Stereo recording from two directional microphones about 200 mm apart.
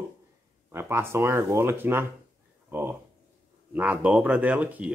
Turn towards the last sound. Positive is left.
turn(degrees=-5)  # may be behind; listen again after turning